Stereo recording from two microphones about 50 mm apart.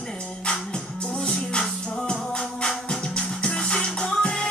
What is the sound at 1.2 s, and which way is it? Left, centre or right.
Music, centre.